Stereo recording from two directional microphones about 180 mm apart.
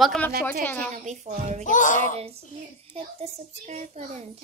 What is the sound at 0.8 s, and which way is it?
Speech, 40° right (ahead or behind).